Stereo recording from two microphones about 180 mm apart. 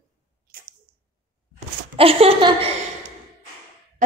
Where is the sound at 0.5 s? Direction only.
55° right (ahead or behind).